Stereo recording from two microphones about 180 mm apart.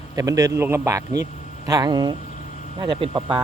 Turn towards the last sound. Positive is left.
turn(degrees=-25)  # may be behind; listen again after turning